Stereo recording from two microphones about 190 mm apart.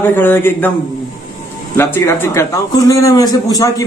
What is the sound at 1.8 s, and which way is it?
A man's voice, 15° left (ahead or behind).